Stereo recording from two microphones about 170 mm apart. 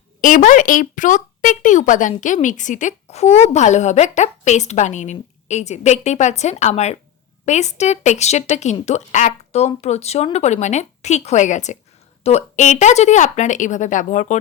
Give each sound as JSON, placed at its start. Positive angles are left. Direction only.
{"t": 0.2, "sound": "a woman's voice", "side_deg": 50}